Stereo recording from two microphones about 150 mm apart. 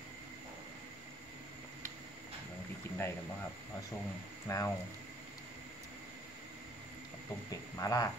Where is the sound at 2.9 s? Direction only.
15° left (ahead or behind).